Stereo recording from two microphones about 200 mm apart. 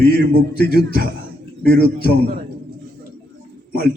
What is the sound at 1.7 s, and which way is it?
Speech, 50° left (ahead or behind).